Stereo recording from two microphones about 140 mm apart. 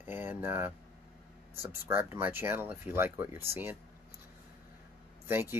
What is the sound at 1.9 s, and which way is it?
Speech, 15° right (ahead or behind).